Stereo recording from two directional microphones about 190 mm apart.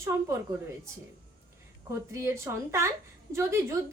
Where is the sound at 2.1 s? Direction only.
15° right (ahead or behind).